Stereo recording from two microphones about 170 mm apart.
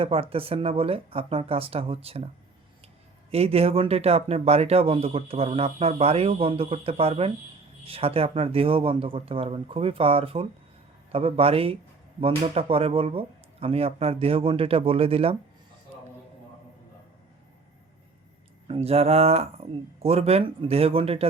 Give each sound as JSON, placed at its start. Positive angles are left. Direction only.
{"t": 0.0, "sound": "speech", "side_deg": -35}
{"t": 3.3, "sound": "speech", "side_deg": -35}
{"t": 18.7, "sound": "speech", "side_deg": -35}